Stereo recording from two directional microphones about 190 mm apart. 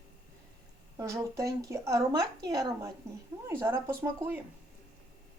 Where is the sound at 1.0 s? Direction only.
20° right (ahead or behind).